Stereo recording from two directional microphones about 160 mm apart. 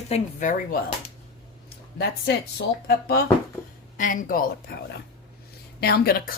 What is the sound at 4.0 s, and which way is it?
Speech, 55° left (ahead or behind).